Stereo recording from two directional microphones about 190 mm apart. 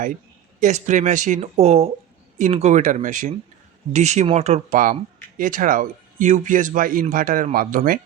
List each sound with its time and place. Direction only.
0.6 s a man's voice: 40° right (ahead or behind)